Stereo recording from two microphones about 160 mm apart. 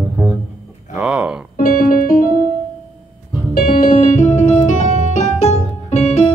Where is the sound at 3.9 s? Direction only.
50° left (ahead or behind).